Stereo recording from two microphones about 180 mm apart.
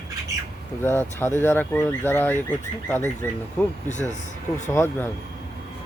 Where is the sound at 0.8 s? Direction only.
10° left (ahead or behind).